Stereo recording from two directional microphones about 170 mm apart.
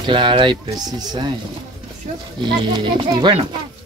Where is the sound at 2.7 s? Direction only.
25° right (ahead or behind).